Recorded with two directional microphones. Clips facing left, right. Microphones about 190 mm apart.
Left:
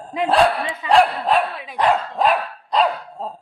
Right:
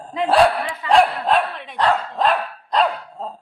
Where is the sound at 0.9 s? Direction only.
5° left (ahead or behind).